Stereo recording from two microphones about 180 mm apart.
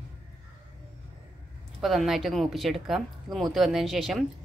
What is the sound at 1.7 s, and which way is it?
Speech, centre (ahead or behind).